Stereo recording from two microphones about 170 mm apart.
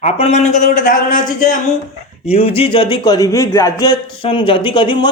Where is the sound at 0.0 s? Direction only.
40° left (ahead or behind).